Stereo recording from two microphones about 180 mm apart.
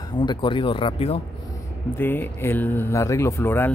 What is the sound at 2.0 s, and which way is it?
Speech, 10° left (ahead or behind).